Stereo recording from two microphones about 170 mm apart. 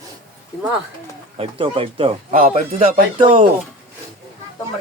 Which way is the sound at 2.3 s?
50° right (ahead or behind).